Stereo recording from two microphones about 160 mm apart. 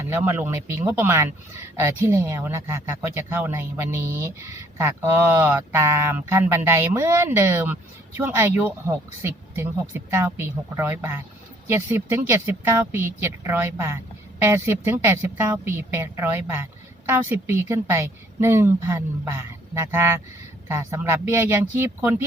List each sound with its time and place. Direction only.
0.0 s speech: 15° right (ahead or behind)